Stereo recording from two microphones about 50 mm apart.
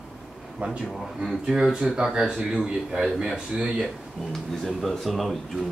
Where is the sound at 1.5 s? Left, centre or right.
Centre.